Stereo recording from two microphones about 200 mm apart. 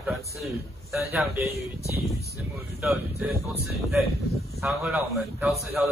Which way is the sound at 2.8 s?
Centre (ahead or behind).